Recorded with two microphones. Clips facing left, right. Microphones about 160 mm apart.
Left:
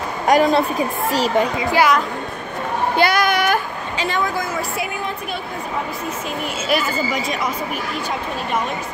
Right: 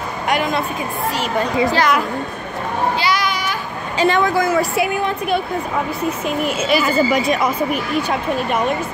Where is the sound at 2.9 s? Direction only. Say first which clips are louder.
Left 3 dB; 55° left (ahead or behind).